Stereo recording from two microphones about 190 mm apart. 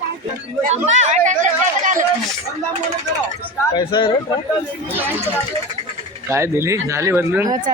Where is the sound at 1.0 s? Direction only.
40° right (ahead or behind).